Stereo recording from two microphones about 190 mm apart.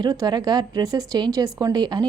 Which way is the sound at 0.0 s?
20° right (ahead or behind).